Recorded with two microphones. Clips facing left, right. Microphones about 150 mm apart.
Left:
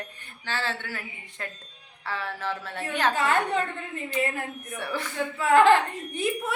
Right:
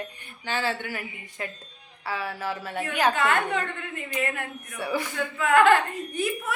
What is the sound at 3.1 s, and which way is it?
Speech, 35° left (ahead or behind).